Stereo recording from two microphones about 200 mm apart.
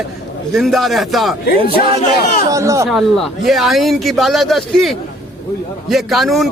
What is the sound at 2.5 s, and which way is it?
Speech, 15° right (ahead or behind).